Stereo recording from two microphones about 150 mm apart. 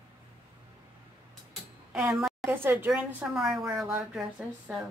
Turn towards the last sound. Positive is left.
turn(degrees=0)  # may be behind; listen again after turning